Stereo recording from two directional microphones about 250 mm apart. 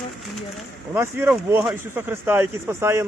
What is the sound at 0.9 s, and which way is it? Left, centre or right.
Speech, centre.